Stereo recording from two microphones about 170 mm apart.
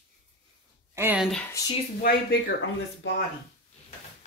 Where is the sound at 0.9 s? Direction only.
10° right (ahead or behind).